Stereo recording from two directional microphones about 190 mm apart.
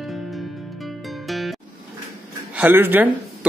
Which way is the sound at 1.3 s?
Centre (ahead or behind).